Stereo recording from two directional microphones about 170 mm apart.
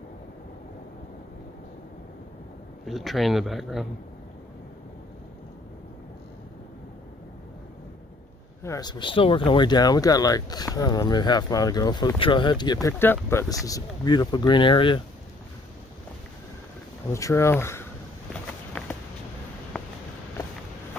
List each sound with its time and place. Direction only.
2.9 s speech: centre (ahead or behind)
8.6 s speech: 20° left (ahead or behind)
17.1 s speech: 15° left (ahead or behind)
18.3 s walk: 10° left (ahead or behind)